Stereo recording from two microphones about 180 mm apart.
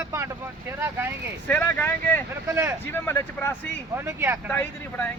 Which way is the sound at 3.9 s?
15° right (ahead or behind).